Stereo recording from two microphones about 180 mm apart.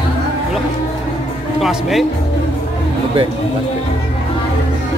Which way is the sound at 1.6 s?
Centre (ahead or behind).